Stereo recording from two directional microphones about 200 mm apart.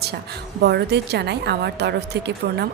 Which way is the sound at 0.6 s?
55° right (ahead or behind).